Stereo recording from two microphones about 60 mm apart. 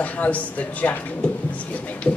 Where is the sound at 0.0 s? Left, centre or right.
Left.